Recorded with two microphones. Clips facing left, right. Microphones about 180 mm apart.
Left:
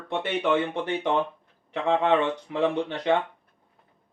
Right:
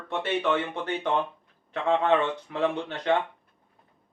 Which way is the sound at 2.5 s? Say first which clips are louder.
Left 3 dB; 15° left (ahead or behind).